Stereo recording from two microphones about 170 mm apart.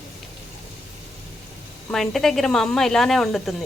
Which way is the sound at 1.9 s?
Centre (ahead or behind).